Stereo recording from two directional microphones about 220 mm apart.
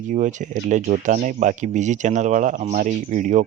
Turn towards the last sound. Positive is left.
turn(degrees=-35)  # may be behind; listen again after turning